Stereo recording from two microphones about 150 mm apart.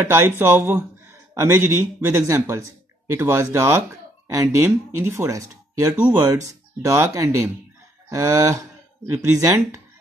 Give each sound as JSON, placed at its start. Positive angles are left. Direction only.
{"t": 0.0, "sound": "speech", "side_deg": -15}